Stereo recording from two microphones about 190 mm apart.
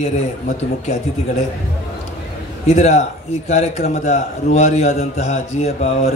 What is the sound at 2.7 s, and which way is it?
A man's voice, 35° left (ahead or behind).